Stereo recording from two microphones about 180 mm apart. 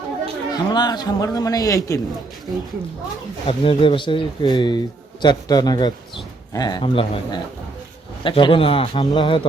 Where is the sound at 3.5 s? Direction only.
30° left (ahead or behind).